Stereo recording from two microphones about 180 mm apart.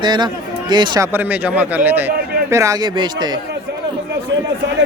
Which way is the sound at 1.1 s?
10° right (ahead or behind).